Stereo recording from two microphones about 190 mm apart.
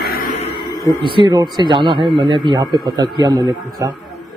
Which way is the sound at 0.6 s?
15° left (ahead or behind).